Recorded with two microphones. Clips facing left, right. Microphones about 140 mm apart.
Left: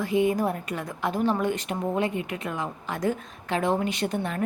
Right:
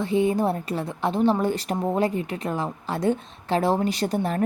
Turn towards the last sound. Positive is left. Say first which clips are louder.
# right 3 dB
turn(degrees=-35)  # may be behind; listen again after turning